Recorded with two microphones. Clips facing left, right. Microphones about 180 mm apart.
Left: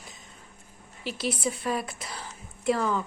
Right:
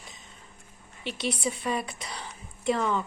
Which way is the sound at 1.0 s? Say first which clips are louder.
Left 1 dB; centre (ahead or behind).